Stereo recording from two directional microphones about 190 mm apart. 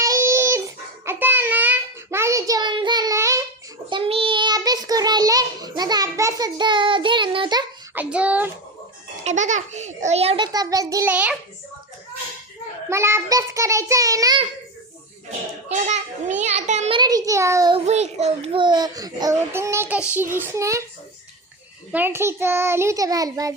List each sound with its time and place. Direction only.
0.0 s dog: 15° right (ahead or behind)
1.0 s a sound: 10° right (ahead or behind)
3.8 s child singing: 25° right (ahead or behind)
7.9 s child singing: 5° right (ahead or behind)
9.2 s a child's voice: 40° right (ahead or behind); by 11.1 s 20° right (ahead or behind)
11.1 s a child's voice: 5° right (ahead or behind)
12.9 s a child's voice: 15° right (ahead or behind)
16.4 s a child's voice: 35° right (ahead or behind)
17.0 s a child's voice: 20° right (ahead or behind)
17.8 s a child's voice: 35° right (ahead or behind); by 20.8 s 15° right (ahead or behind)
21.9 s a child's voice: 10° right (ahead or behind)